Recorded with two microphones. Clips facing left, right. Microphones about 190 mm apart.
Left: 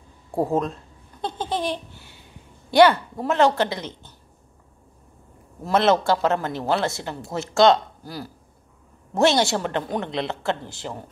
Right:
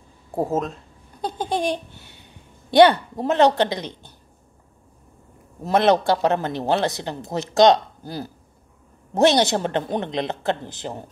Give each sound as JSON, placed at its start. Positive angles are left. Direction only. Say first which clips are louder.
{"t": 0.3, "sound": "speech", "louder": "left 1 dB", "side_deg": 0}
{"t": 1.2, "sound": "a sound", "louder": "right 2 dB", "side_deg": -15}
{"t": 2.7, "sound": "speech", "louder": "right 2 dB", "side_deg": -20}
{"t": 5.6, "sound": "speech", "louder": "right 2 dB", "side_deg": -15}